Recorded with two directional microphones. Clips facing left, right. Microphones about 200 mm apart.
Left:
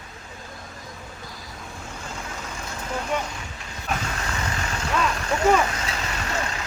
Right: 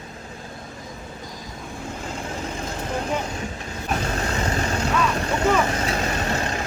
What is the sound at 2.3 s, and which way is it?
Vehicle, 35° right (ahead or behind).